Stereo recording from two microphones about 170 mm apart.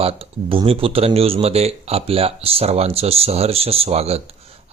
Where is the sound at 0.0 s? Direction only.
35° right (ahead or behind).